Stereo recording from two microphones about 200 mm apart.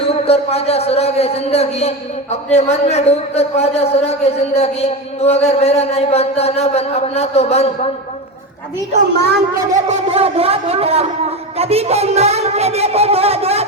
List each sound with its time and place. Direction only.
0.0 s a man's voice: 30° left (ahead or behind)
9.7 s a man's voice: 30° right (ahead or behind)